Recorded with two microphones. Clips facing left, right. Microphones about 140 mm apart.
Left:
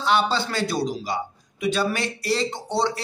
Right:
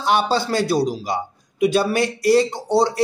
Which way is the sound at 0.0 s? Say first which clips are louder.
Right 3 dB; 45° right (ahead or behind).